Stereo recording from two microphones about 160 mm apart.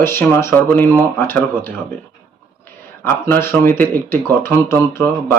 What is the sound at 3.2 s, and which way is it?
Speech, 15° left (ahead or behind).